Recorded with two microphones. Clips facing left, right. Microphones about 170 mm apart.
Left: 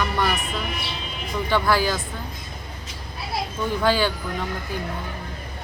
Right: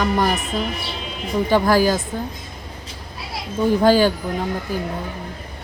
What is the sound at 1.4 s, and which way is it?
Speech, 40° right (ahead or behind).